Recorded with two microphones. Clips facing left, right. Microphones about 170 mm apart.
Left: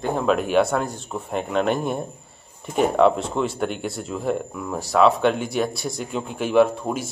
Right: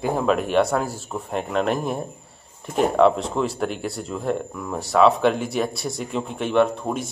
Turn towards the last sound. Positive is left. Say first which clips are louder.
# left 2 dB
turn(degrees=0)  # may be behind; listen again after turning